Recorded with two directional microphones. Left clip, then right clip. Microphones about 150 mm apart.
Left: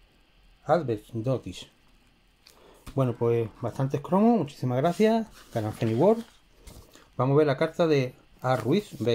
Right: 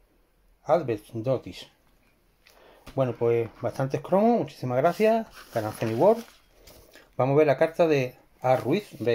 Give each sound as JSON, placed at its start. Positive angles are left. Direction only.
{"t": 0.7, "sound": "speech", "side_deg": 10}
{"t": 2.4, "sound": "a sound", "side_deg": 20}
{"t": 3.6, "sound": "speech", "side_deg": 10}
{"t": 6.9, "sound": "speech", "side_deg": 10}